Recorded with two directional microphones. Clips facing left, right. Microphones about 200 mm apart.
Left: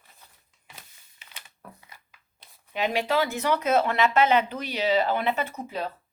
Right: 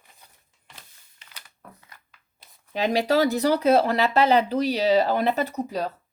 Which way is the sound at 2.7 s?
35° right (ahead or behind).